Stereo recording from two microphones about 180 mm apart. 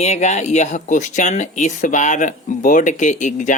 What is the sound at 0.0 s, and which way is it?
Speech, 40° left (ahead or behind).